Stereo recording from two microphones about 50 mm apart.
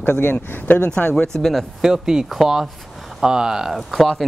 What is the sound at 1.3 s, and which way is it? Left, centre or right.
Speech, centre.